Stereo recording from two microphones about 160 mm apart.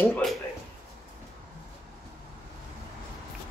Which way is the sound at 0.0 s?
10° left (ahead or behind).